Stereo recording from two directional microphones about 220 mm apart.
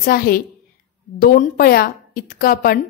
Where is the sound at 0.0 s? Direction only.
40° left (ahead or behind).